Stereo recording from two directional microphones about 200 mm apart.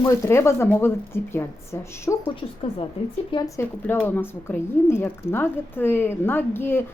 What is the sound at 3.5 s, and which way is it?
Speech, 10° left (ahead or behind).